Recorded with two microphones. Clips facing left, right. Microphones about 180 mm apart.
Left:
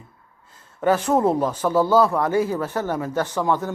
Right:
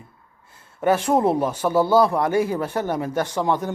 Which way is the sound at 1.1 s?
10° right (ahead or behind).